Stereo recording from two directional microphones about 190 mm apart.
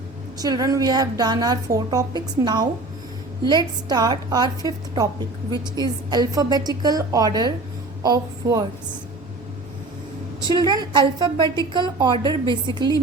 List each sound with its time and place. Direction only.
0.3 s a woman's voice: 20° right (ahead or behind)
10.4 s a woman's voice: 25° right (ahead or behind)